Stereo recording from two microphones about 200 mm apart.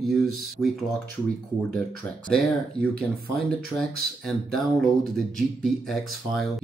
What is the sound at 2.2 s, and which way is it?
Speech, 5° left (ahead or behind).